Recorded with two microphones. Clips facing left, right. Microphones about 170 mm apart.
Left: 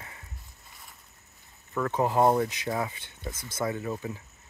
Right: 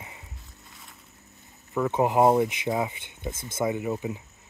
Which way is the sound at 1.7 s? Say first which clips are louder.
Right 3 dB; 15° right (ahead or behind).